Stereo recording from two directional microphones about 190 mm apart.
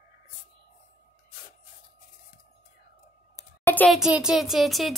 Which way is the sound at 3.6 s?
10° left (ahead or behind).